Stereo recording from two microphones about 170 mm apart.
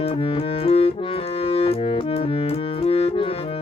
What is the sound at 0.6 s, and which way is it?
Clarinet, 35° left (ahead or behind).